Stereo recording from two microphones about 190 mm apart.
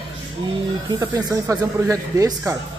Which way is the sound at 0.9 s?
15° right (ahead or behind).